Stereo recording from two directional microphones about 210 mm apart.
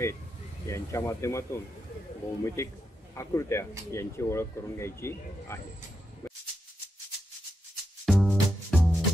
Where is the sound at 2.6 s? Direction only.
15° left (ahead or behind).